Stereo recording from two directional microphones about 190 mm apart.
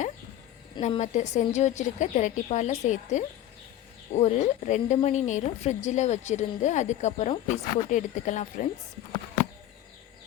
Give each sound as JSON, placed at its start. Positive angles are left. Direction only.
{"t": 0.8, "sound": "a woman's voice", "side_deg": 35}